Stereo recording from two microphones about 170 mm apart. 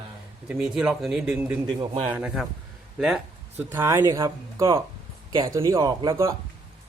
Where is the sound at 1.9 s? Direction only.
35° right (ahead or behind).